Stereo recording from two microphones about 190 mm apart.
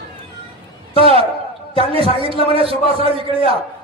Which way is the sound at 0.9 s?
30° right (ahead or behind).